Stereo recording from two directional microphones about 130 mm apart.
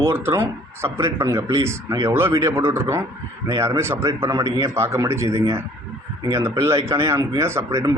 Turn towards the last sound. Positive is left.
turn(degrees=-25)  # may be behind; listen again after turning